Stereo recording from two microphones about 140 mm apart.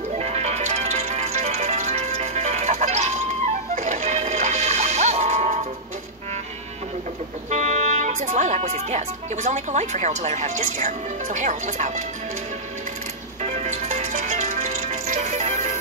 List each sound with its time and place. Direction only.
0.1 s music: 50° right (ahead or behind)
7.4 s speech: 55° right (ahead or behind)
13.5 s music: 55° right (ahead or behind)